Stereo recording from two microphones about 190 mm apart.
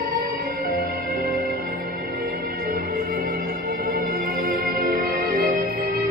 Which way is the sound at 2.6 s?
50° right (ahead or behind).